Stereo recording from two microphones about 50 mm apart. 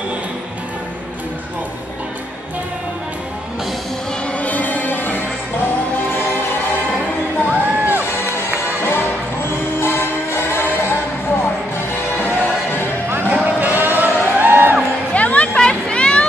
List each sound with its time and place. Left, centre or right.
4.3 s music: left
7.4 s music: right
8.0 s music: left
12.2 s music: left
13.3 s a sound: right
15.1 s music: left
15.5 s a sound: centre